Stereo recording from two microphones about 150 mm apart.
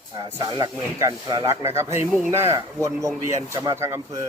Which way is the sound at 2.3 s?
20° right (ahead or behind).